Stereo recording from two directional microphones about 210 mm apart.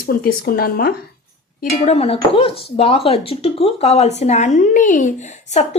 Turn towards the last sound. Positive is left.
turn(degrees=35)  # may be behind; listen again after turning